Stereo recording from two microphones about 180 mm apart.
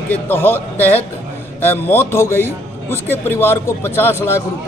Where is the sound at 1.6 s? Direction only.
10° left (ahead or behind).